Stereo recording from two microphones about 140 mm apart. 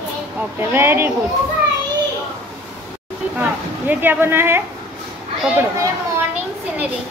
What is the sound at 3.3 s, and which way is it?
A woman's voice, 15° right (ahead or behind).